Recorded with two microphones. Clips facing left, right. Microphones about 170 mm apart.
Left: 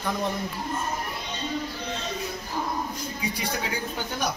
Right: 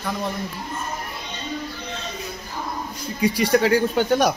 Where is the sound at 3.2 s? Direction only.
90° right.